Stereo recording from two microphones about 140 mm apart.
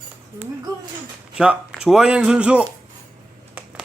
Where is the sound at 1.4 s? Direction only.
5° right (ahead or behind).